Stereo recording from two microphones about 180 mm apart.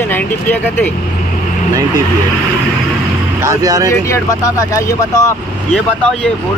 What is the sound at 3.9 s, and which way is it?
Speech, 15° left (ahead or behind).